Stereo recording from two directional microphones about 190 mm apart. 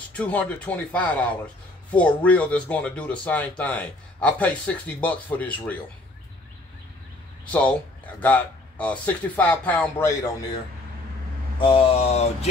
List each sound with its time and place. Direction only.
0.1 s speech: 5° left (ahead or behind)
8.2 s speech: 10° left (ahead or behind)
11.6 s a sound: 30° left (ahead or behind)